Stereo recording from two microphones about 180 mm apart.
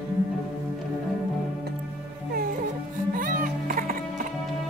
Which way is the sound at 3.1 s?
50° right (ahead or behind).